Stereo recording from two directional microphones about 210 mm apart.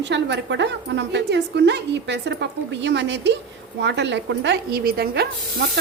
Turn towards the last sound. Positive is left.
turn(degrees=-50)  # may be behind; listen again after turning